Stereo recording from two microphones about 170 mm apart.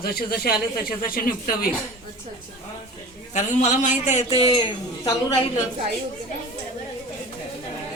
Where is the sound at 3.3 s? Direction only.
45° left (ahead or behind).